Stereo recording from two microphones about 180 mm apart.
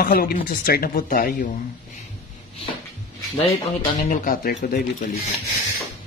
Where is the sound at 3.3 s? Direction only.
30° left (ahead or behind).